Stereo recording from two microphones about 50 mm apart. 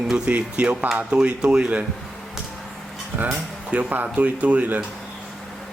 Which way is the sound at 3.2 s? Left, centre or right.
Right.